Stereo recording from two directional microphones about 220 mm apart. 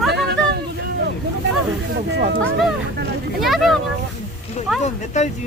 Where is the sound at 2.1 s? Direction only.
50° right (ahead or behind).